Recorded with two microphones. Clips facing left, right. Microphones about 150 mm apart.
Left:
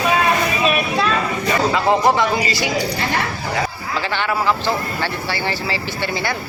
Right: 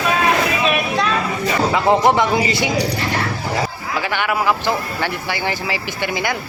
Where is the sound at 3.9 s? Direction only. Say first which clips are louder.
Right 1 dB; 15° right (ahead or behind).